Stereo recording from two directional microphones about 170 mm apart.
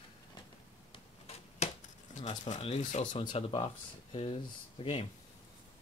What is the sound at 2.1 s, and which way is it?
Speech, 45° left (ahead or behind).